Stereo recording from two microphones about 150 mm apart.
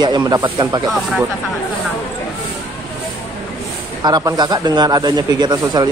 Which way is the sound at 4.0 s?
25° right (ahead or behind).